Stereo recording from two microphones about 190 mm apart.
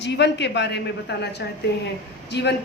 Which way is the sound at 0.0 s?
65° left (ahead or behind).